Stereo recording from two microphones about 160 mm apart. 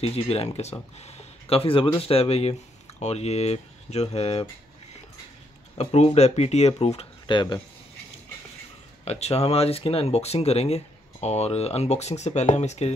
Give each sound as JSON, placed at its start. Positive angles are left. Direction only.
{"t": 0.0, "sound": "speech", "side_deg": 40}
{"t": 5.8, "sound": "speech", "side_deg": 45}
{"t": 9.0, "sound": "speech", "side_deg": 40}